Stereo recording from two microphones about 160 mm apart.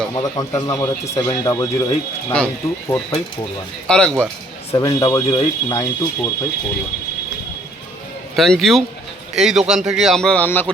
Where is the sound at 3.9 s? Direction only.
5° left (ahead or behind).